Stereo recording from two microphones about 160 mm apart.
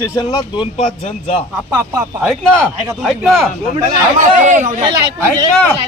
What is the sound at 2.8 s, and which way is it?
Speech, centre (ahead or behind).